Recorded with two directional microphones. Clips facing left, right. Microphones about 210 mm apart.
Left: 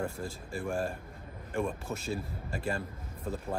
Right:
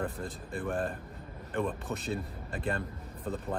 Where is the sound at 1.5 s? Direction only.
10° left (ahead or behind).